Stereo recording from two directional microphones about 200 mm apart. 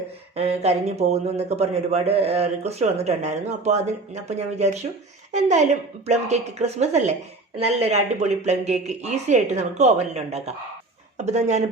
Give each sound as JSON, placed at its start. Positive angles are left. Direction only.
{"t": 0.3, "sound": "a man's voice", "side_deg": -30}